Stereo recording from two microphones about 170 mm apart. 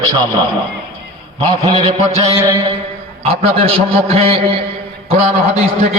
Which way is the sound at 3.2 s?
35° right (ahead or behind).